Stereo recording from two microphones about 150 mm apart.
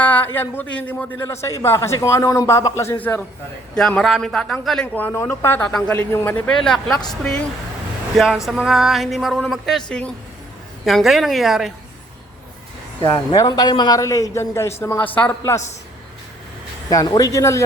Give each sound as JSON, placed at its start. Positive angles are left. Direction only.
{"t": 0.0, "sound": "a man's voice", "side_deg": 10}
{"t": 4.9, "sound": "a man's voice", "side_deg": 15}
{"t": 13.3, "sound": "a man's voice", "side_deg": 25}
{"t": 16.9, "sound": "a man's voice", "side_deg": 25}